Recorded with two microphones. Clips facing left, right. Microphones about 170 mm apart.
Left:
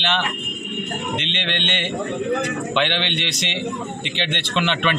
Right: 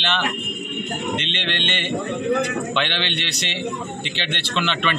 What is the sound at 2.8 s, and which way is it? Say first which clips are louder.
Speech: left 3 dB; 15° left (ahead or behind).